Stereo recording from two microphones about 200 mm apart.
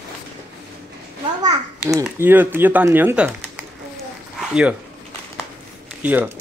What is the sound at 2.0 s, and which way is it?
Speech, 10° right (ahead or behind).